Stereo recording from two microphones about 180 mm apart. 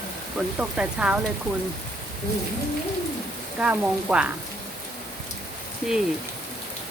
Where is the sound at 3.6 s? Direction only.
5° right (ahead or behind).